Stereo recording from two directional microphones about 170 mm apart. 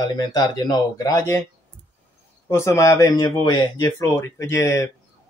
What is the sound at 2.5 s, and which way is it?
Speech, 15° left (ahead or behind).